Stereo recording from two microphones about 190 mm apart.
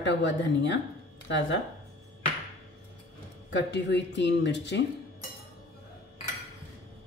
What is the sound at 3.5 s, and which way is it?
Speech, 70° left (ahead or behind).